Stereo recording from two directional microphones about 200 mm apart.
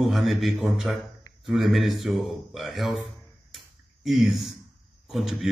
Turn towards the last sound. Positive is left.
turn(degrees=0)  # may be behind; listen again after turning